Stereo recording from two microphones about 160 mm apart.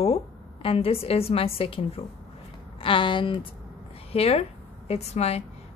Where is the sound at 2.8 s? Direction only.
30° left (ahead or behind).